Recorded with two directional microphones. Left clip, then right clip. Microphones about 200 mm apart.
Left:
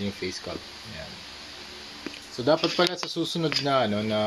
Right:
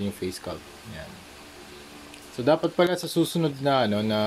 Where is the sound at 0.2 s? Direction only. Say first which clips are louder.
Right 1 dB; 20° right (ahead or behind).